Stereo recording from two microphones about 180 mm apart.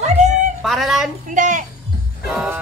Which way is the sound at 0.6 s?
Centre (ahead or behind).